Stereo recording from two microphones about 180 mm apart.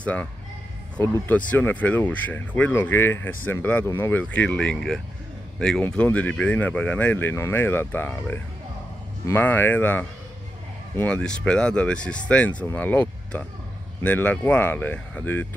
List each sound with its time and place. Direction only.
0.0 s speech: 5° left (ahead or behind)